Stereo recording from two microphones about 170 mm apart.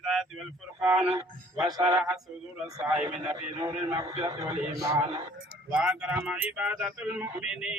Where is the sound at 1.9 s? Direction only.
20° right (ahead or behind).